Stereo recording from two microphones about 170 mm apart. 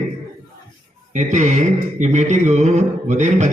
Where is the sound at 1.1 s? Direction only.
45° right (ahead or behind).